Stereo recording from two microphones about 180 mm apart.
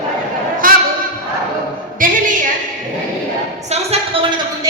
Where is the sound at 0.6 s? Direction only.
50° right (ahead or behind).